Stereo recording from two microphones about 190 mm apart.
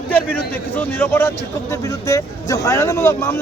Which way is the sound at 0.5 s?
10° left (ahead or behind).